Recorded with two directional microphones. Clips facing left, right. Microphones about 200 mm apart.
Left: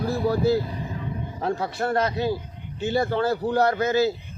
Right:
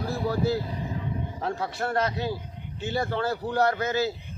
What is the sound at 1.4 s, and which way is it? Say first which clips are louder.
Speech: left 5 dB; 40° left (ahead or behind).